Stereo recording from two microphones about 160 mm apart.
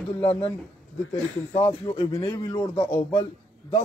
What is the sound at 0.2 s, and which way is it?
Speech, 35° left (ahead or behind).